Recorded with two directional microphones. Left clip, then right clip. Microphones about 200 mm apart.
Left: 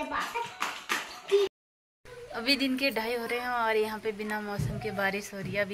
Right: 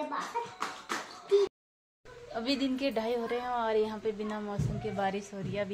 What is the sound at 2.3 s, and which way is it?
A woman's voice, centre (ahead or behind).